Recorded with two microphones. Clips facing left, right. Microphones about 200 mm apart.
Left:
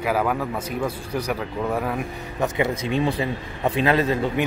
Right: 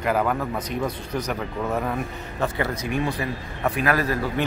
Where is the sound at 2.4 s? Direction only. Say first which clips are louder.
Left 3 dB; 15° left (ahead or behind).